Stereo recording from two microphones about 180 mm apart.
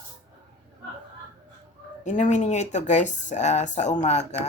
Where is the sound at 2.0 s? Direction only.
40° left (ahead or behind).